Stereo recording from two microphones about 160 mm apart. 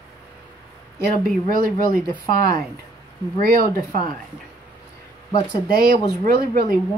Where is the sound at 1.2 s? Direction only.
65° right (ahead or behind).